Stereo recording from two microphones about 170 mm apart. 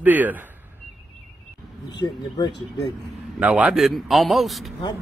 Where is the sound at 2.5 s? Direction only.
90° left.